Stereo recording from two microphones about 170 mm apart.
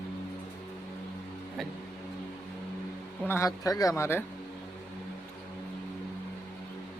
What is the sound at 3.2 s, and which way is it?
Speech, 15° left (ahead or behind).